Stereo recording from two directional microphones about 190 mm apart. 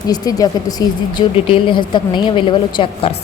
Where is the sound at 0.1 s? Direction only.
20° left (ahead or behind).